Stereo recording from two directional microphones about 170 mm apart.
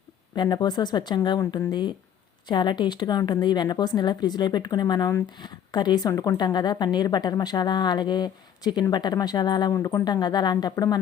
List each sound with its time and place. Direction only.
0.3 s a woman's voice: 25° left (ahead or behind)